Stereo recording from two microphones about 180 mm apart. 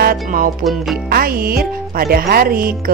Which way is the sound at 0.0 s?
50° right (ahead or behind).